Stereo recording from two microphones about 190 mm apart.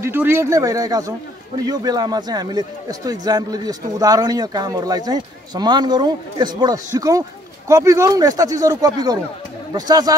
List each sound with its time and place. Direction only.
0.0 s a man's voice: 10° right (ahead or behind)